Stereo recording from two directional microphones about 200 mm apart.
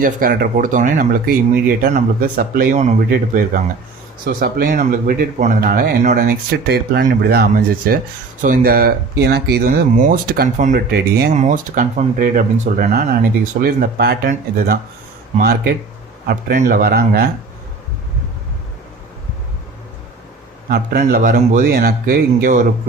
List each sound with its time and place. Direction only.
0.0 s speech: 45° right (ahead or behind)
11.3 s speech: 40° right (ahead or behind)
20.7 s speech: 50° right (ahead or behind)